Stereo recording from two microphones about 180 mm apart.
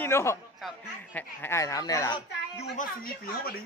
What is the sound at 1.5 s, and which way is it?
Speech, 15° left (ahead or behind).